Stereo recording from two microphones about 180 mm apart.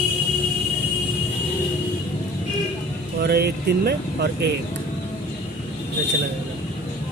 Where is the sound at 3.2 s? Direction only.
65° right (ahead or behind).